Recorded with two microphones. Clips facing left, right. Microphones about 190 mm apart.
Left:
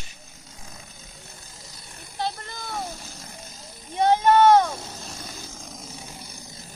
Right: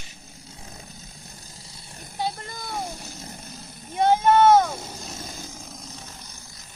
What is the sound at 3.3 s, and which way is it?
Vehicle, 60° right (ahead or behind).